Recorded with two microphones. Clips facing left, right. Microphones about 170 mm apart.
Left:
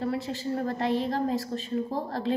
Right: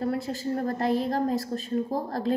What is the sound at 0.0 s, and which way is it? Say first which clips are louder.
A woman's voice: right 2 dB; 45° right (ahead or behind).